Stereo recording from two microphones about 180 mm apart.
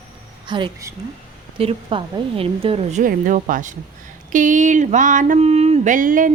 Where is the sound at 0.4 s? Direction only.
25° right (ahead or behind).